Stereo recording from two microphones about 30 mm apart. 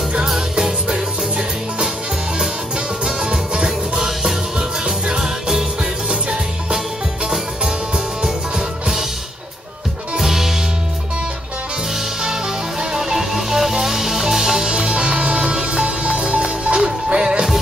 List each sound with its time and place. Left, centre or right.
0.6 s music: right
3.2 s music: right
8.2 s music: centre
10.1 s music: centre
12.9 s music: centre
14.7 s music: right
17.1 s music: right